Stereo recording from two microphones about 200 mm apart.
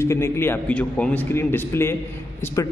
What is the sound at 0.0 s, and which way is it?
A man's voice, 15° left (ahead or behind).